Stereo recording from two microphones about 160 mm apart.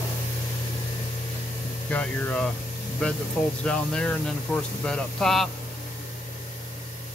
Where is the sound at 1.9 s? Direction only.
5° left (ahead or behind).